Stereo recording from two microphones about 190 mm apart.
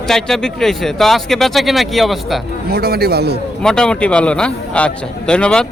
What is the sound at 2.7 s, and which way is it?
Speech, 55° right (ahead or behind).